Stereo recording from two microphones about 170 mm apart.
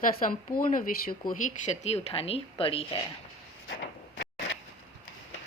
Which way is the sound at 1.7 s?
40° left (ahead or behind).